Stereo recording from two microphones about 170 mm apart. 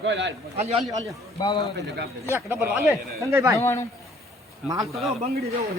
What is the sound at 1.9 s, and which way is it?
Speech, 80° right.